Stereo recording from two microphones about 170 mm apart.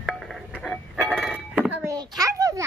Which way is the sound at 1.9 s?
20° right (ahead or behind).